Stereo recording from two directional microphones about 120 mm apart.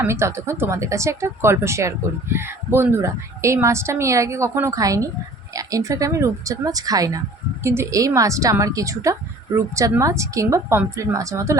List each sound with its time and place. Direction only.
0.0 s a woman's voice: 20° right (ahead or behind)